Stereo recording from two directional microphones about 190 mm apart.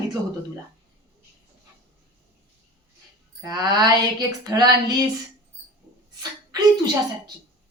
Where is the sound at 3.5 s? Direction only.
20° right (ahead or behind).